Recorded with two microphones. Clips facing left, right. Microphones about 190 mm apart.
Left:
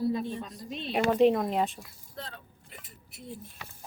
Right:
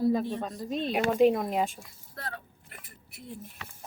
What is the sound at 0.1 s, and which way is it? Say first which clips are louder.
Speech: right 4 dB; 60° right (ahead or behind).